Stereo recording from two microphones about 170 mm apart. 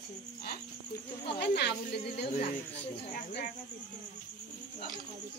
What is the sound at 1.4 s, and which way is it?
Speech, 75° left (ahead or behind).